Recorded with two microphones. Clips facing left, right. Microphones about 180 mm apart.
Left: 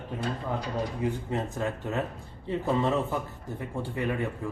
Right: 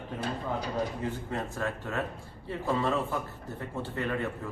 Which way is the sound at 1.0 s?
15° left (ahead or behind).